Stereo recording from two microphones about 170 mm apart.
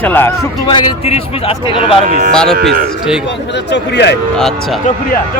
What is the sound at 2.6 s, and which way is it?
Speech, 75° right (ahead or behind).